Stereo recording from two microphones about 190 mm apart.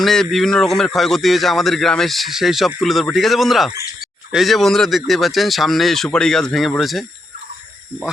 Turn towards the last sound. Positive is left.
turn(degrees=0)  # may be behind; listen again after turning